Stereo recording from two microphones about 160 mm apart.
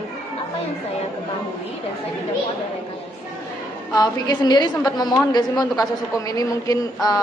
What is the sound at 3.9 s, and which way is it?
A woman's voice, 25° left (ahead or behind).